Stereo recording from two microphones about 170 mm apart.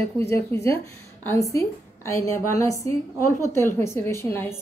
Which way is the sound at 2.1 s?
15° left (ahead or behind).